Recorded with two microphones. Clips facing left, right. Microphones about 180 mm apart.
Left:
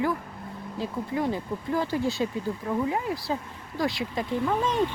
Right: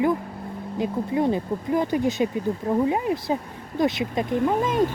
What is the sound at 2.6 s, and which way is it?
Speech, 30° right (ahead or behind).